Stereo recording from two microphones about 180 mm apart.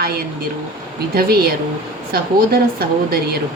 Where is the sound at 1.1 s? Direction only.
55° right (ahead or behind).